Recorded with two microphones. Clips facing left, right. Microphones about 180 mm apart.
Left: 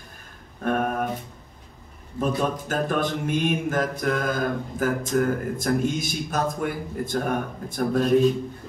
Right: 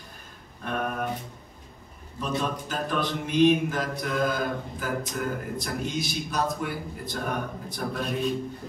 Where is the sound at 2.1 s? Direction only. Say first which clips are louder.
Left 5 dB; 50° left (ahead or behind).